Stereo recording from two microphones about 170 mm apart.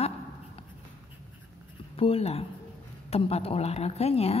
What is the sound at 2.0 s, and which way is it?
A woman's voice, 35° left (ahead or behind).